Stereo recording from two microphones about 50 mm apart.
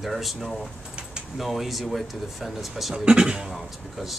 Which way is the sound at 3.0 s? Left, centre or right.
Centre.